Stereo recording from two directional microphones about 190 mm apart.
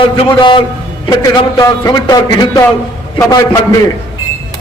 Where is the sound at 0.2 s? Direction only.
25° left (ahead or behind).